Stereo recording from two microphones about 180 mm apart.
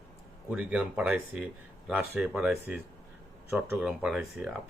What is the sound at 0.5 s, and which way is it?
Speech, 5° right (ahead or behind).